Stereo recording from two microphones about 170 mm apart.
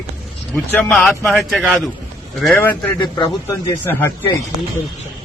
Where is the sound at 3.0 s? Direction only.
25° left (ahead or behind).